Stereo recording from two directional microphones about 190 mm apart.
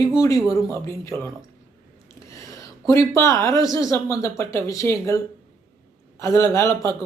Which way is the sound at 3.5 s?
15° left (ahead or behind).